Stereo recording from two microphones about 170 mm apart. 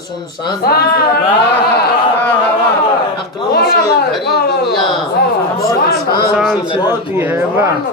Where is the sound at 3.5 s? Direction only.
70° left (ahead or behind).